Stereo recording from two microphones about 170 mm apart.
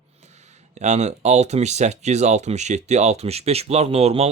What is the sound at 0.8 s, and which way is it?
Speech, 40° right (ahead or behind).